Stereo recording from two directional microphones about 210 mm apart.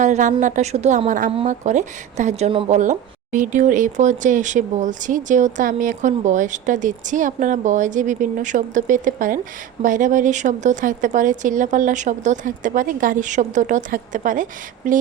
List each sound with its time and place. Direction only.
0.0 s speech: 35° right (ahead or behind)